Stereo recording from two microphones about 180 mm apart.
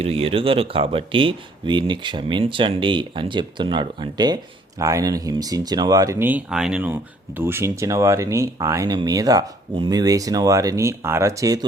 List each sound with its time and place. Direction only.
0.0 s speech: 35° right (ahead or behind); by 11.6 s 20° right (ahead or behind)